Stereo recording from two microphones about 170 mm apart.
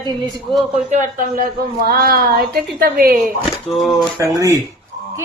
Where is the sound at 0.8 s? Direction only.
45° right (ahead or behind).